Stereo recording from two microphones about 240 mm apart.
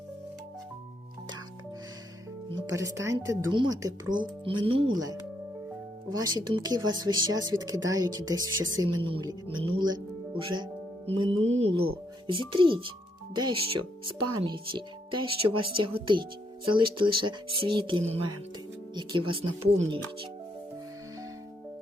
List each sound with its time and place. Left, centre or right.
2.6 s speech: centre